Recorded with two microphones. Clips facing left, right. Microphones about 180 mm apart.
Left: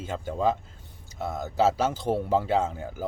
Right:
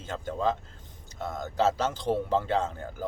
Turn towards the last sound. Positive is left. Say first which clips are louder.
# left 3 dB
turn(degrees=10)  # may be behind; listen again after turning